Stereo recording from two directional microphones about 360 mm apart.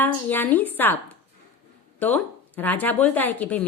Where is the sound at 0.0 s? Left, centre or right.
Centre.